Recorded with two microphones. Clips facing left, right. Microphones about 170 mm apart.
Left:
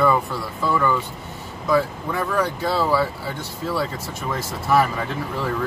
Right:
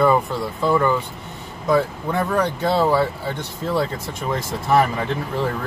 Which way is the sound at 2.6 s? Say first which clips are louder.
Right 4 dB; 25° right (ahead or behind).